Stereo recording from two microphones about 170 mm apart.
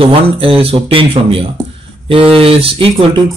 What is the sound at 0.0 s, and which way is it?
Speech, 35° right (ahead or behind).